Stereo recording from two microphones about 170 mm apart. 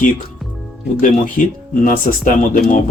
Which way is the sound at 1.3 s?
50° left (ahead or behind).